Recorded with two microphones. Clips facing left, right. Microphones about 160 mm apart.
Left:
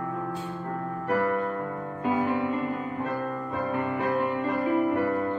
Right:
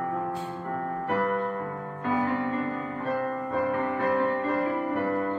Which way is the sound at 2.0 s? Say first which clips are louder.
Left 1 dB; 15° left (ahead or behind).